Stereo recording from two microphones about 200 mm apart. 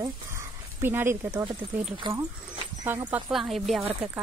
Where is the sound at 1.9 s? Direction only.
25° right (ahead or behind).